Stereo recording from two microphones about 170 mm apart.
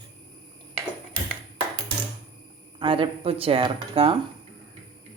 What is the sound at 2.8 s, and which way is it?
Speech, 30° right (ahead or behind).